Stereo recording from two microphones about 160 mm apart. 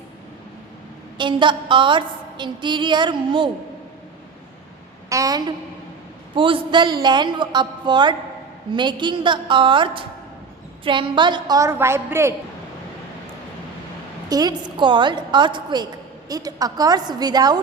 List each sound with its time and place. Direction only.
1.2 s a woman's voice: 30° right (ahead or behind)
5.0 s a woman's voice: 20° right (ahead or behind)
6.3 s a woman's voice: 30° right (ahead or behind); by 12.3 s 15° right (ahead or behind)
14.3 s a woman's voice: 25° right (ahead or behind)